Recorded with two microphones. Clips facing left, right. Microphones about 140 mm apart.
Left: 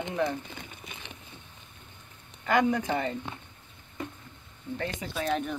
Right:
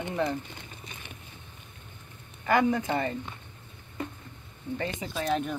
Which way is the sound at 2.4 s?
5° right (ahead or behind).